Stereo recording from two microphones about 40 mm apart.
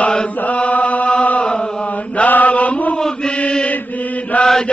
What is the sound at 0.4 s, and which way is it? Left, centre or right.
Chant, left.